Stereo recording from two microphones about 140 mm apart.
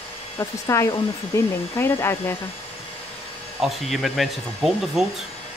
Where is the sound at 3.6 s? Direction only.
Centre (ahead or behind).